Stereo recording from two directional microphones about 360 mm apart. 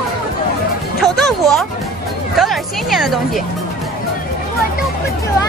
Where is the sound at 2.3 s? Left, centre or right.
Centre.